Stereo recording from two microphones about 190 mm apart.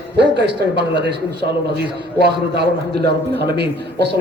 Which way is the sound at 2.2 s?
60° right (ahead or behind).